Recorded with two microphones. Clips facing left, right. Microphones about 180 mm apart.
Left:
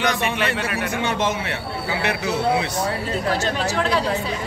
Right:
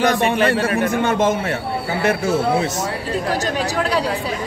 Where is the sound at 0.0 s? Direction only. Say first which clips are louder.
Right 6 dB; 50° right (ahead or behind).